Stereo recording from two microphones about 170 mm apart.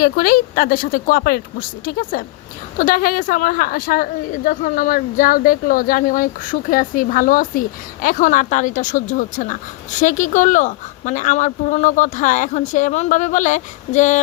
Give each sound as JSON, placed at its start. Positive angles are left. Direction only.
{"t": 0.0, "sound": "a woman's voice", "side_deg": 60}